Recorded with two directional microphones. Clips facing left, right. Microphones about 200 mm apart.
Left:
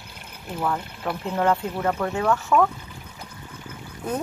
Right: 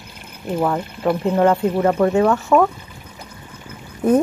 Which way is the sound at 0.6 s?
20° right (ahead or behind).